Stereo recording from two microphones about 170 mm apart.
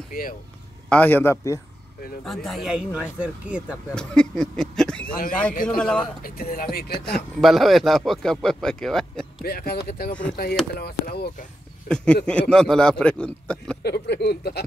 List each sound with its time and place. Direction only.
0.1 s speech: 55° left (ahead or behind)
0.8 s a man's voice: 10° left (ahead or behind)
2.2 s speech: centre (ahead or behind)
3.9 s speech: 5° left (ahead or behind)
5.0 s speech: 55° left (ahead or behind)
5.8 s speech: 5° left (ahead or behind)
6.2 s speech: 60° left (ahead or behind)
7.1 s speech: centre (ahead or behind)
9.4 s speech: 65° left (ahead or behind)
11.9 s speech: 5° left (ahead or behind)
13.8 s speech: 70° left (ahead or behind)